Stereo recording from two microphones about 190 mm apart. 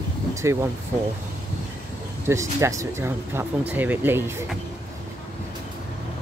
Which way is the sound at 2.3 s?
15° right (ahead or behind).